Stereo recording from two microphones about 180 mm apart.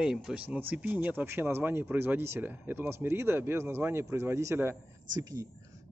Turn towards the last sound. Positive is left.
turn(degrees=-20)  # may be behind; listen again after turning